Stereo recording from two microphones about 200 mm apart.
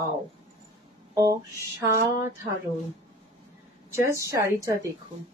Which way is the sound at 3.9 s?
15° right (ahead or behind).